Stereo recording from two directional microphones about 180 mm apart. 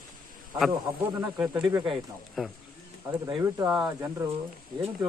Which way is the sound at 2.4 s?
Centre (ahead or behind).